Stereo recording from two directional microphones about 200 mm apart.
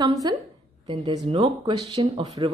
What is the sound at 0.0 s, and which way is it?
A woman's voice, 20° right (ahead or behind).